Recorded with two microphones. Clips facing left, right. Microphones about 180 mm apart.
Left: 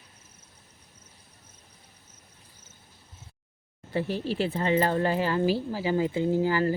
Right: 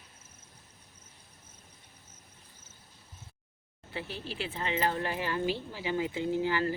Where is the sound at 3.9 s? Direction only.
40° left (ahead or behind).